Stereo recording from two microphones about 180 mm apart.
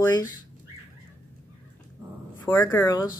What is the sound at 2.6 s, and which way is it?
Speech, 15° left (ahead or behind).